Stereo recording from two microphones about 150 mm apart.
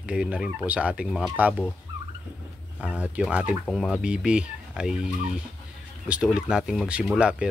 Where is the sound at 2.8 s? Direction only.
10° right (ahead or behind).